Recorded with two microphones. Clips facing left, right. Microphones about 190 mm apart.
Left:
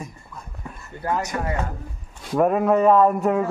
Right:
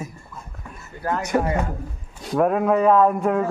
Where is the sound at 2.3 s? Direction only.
Centre (ahead or behind).